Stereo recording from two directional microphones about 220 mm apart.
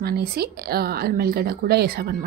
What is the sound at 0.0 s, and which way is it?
A woman's voice, 45° right (ahead or behind).